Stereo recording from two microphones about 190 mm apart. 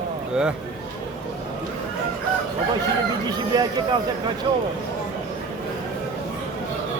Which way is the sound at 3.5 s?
20° right (ahead or behind).